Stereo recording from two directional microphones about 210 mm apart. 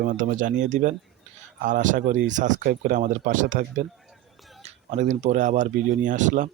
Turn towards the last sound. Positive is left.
turn(degrees=-35)  # may be behind; listen again after turning